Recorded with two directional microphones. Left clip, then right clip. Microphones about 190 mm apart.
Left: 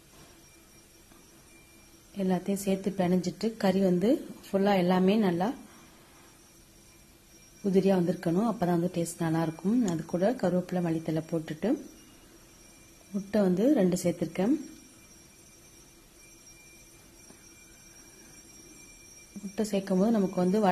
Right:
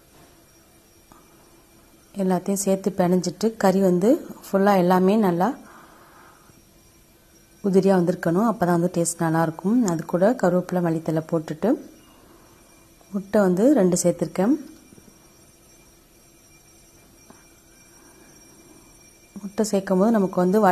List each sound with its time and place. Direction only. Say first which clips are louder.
2.1 s a woman's voice: right 7 dB; 20° right (ahead or behind)
7.6 s a woman's voice: right 7 dB; 20° right (ahead or behind)
13.3 s a woman's voice: right 8 dB; 20° right (ahead or behind)
19.5 s a woman's voice: right 8 dB; 20° right (ahead or behind)